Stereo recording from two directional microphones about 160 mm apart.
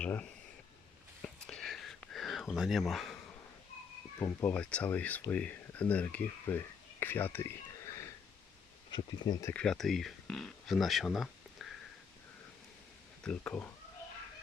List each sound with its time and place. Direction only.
0.0 s speech: 10° left (ahead or behind)
1.2 s a sound: 5° left (ahead or behind)
2.6 s speech: centre (ahead or behind)
4.2 s speech: 15° left (ahead or behind)
8.9 s speech: 30° left (ahead or behind)
9.5 s speech: 5° left (ahead or behind)
13.2 s speech: 10° left (ahead or behind)